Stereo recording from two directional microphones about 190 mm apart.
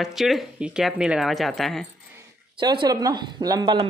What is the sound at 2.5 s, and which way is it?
Speech, 25° right (ahead or behind).